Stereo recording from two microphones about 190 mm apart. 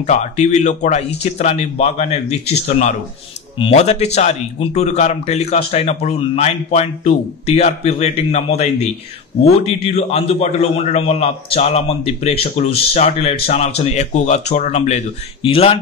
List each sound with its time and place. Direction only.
0.0 s a man's voice: 40° left (ahead or behind)